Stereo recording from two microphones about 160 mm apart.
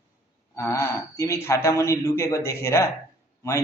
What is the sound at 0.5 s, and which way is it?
A woman's voice, 20° left (ahead or behind).